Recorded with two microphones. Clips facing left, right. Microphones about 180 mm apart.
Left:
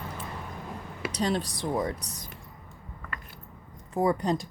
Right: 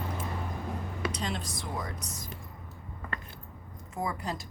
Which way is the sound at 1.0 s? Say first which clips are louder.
Left 7 dB; 35° left (ahead or behind).